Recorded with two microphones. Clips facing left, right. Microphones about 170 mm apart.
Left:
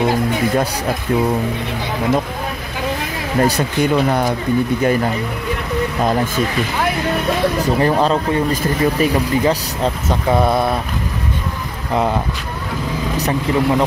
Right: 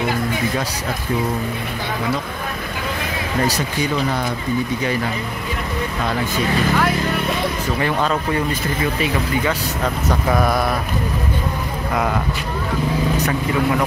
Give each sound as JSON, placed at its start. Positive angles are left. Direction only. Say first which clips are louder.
{"t": 3.4, "sound": "speech", "louder": "left 5 dB", "side_deg": 60}
{"t": 7.8, "sound": "speech", "louder": "left 4 dB", "side_deg": 35}
{"t": 11.9, "sound": "speech", "louder": "left 4 dB", "side_deg": 25}
{"t": 13.2, "sound": "speech", "louder": "left 2 dB", "side_deg": 25}